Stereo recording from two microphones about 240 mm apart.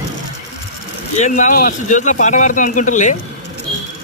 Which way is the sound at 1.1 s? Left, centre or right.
Left.